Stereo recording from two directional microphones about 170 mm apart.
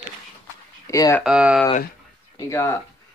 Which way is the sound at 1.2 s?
5° right (ahead or behind).